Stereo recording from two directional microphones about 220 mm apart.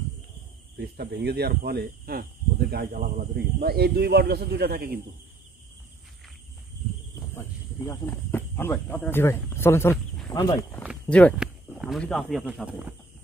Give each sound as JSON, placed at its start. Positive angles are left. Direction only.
{"t": 0.7, "sound": "speech", "side_deg": -45}
{"t": 7.3, "sound": "speech", "side_deg": 10}
{"t": 10.8, "sound": "speech", "side_deg": 0}